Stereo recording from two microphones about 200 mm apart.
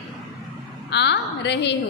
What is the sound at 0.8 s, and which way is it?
Speech, 60° left (ahead or behind).